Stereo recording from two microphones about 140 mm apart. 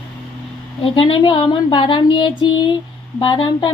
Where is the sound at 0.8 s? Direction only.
40° left (ahead or behind).